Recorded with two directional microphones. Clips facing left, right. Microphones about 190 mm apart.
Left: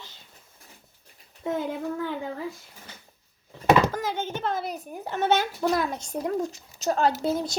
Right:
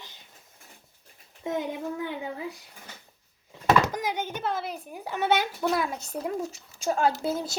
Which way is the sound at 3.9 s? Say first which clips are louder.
Left 1 dB; 15° right (ahead or behind).